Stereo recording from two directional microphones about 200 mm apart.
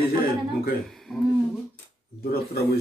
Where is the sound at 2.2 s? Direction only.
50° left (ahead or behind).